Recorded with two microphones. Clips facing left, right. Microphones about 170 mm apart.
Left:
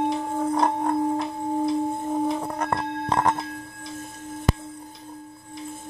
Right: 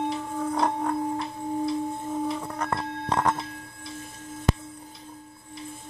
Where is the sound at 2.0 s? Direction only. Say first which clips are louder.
Left 4 dB; 40° left (ahead or behind).